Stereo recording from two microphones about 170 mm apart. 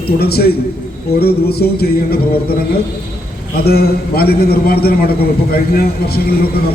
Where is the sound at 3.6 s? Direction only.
65° left (ahead or behind).